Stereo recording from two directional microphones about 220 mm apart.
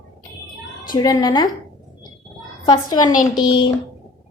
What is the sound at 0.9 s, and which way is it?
Speech, 20° left (ahead or behind).